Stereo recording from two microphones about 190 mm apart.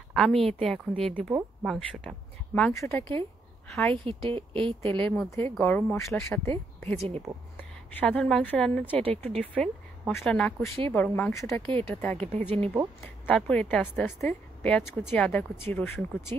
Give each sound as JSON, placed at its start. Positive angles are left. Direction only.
{"t": 0.1, "sound": "a woman's voice", "side_deg": 0}
{"t": 3.6, "sound": "a woman's voice", "side_deg": 5}
{"t": 3.9, "sound": "speech", "side_deg": -25}
{"t": 5.0, "sound": "a woman's voice", "side_deg": 5}
{"t": 7.0, "sound": "speech", "side_deg": -35}
{"t": 7.9, "sound": "a woman's voice", "side_deg": 10}